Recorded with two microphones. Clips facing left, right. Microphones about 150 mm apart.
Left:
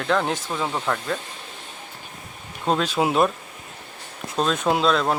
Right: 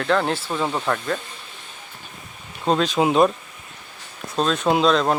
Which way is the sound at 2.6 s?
10° left (ahead or behind).